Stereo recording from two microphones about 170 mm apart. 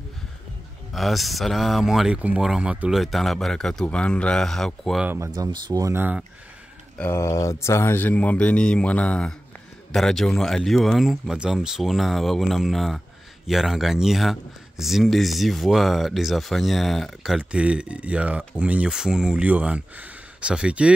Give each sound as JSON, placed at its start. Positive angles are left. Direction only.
{"t": 0.9, "sound": "speech", "side_deg": 0}
{"t": 5.0, "sound": "speech", "side_deg": -15}
{"t": 5.3, "sound": "speech", "side_deg": -25}
{"t": 7.0, "sound": "speech", "side_deg": 15}